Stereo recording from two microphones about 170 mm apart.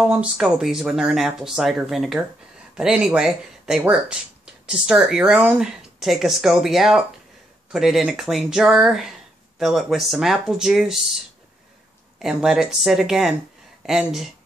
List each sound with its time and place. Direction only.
0.0 s speech: 5° right (ahead or behind)
12.2 s speech: 5° right (ahead or behind)